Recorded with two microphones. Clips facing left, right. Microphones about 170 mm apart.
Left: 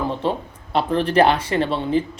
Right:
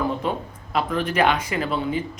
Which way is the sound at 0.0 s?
30° left (ahead or behind).